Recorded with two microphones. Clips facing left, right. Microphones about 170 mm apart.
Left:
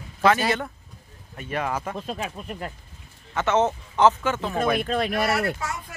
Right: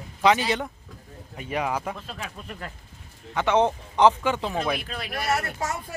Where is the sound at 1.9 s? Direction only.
20° left (ahead or behind).